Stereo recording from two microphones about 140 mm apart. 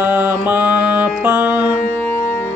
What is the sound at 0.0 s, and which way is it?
Music, 15° right (ahead or behind).